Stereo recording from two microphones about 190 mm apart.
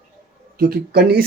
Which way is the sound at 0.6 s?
50° right (ahead or behind).